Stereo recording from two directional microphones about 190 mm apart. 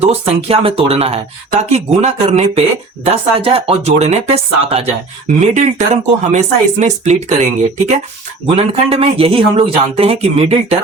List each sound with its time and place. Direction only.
0.0 s speech: 30° right (ahead or behind)
8.5 s speech: 30° right (ahead or behind)